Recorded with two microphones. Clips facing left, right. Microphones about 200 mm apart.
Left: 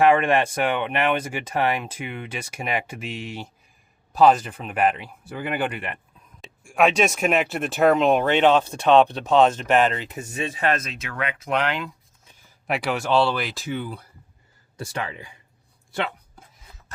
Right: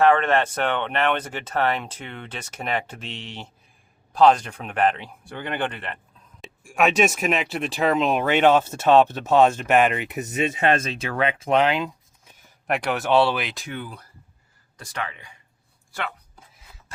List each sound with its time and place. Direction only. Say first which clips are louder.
0.0 s speech: left 1 dB; 10° left (ahead or behind)
6.4 s speech: left 2 dB; centre (ahead or behind); by 11.9 s 20° right (ahead or behind)
12.6 s speech: right 1 dB; centre (ahead or behind)
14.8 s speech: left 2 dB; 30° left (ahead or behind)